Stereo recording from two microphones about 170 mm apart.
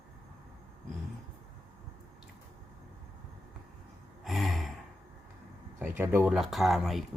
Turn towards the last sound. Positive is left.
turn(degrees=0)  # may be behind; listen again after turning